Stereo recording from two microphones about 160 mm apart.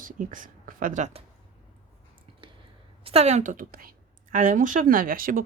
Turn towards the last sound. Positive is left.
turn(degrees=-60)  # may be behind; listen again after turning